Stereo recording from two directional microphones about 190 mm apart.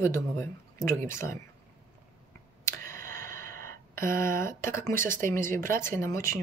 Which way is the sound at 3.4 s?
15° left (ahead or behind).